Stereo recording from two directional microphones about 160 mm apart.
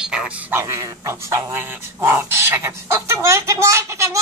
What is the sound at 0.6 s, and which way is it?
Dog, 20° right (ahead or behind).